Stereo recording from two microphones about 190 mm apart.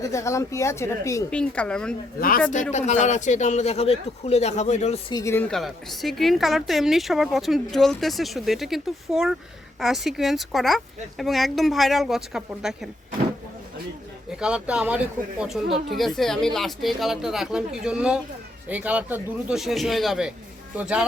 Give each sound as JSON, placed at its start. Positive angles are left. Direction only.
{"t": 0.0, "sound": "a woman's voice", "side_deg": 15}
{"t": 2.7, "sound": "a man's voice", "side_deg": 40}
{"t": 5.1, "sound": "a woman's voice", "side_deg": 15}
{"t": 14.3, "sound": "a woman's voice", "side_deg": -5}